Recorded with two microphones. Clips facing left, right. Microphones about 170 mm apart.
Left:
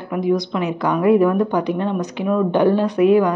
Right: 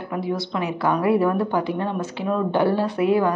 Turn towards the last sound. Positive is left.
turn(degrees=20)  # may be behind; listen again after turning